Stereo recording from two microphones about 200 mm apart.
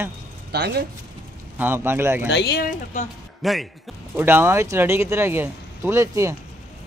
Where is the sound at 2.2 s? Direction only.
60° left (ahead or behind); by 3.1 s 45° left (ahead or behind).